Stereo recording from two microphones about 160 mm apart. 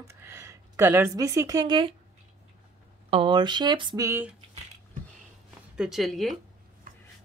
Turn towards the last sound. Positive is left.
turn(degrees=0)  # may be behind; listen again after turning